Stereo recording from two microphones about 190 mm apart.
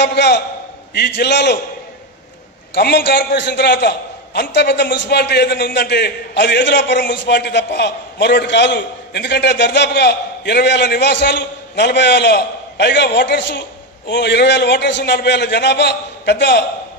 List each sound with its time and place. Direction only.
0.0 s a man's voice: 60° left (ahead or behind)
2.7 s a man's voice: 65° left (ahead or behind)